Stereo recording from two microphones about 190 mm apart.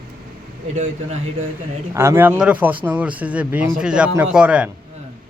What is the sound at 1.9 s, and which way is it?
Speech, 15° right (ahead or behind).